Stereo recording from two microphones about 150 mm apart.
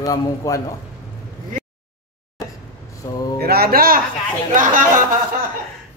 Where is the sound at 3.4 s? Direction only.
90° right; by 4.0 s 75° right (ahead or behind).